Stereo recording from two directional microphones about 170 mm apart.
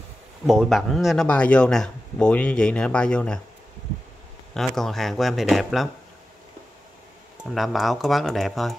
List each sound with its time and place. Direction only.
0.5 s speech: centre (ahead or behind)
4.6 s speech: centre (ahead or behind)
7.4 s speech: centre (ahead or behind)